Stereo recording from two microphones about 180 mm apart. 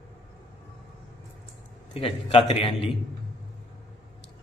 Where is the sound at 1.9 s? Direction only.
30° left (ahead or behind).